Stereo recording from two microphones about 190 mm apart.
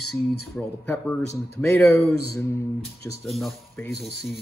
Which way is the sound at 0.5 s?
10° left (ahead or behind).